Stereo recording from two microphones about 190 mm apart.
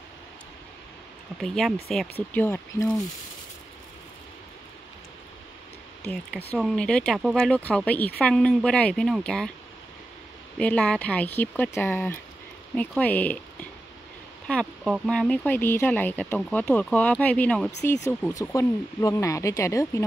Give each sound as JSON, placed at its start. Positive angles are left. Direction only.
{"t": 1.4, "sound": "speech", "side_deg": 0}
{"t": 6.5, "sound": "speech", "side_deg": 5}
{"t": 10.6, "sound": "speech", "side_deg": 5}
{"t": 14.5, "sound": "speech", "side_deg": 5}